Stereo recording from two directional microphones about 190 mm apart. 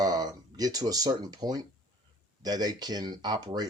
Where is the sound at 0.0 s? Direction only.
20° right (ahead or behind).